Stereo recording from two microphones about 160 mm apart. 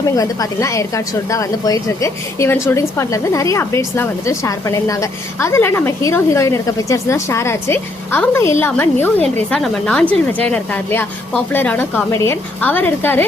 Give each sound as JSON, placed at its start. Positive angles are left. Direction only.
{"t": 0.2, "sound": "a woman's voice", "side_deg": 20}